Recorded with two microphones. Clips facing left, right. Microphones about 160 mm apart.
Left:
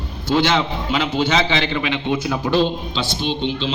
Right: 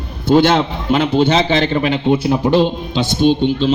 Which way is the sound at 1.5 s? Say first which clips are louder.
Right 6 dB; 45° right (ahead or behind).